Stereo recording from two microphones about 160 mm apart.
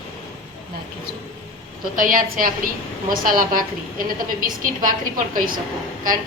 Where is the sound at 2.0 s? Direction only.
60° right (ahead or behind).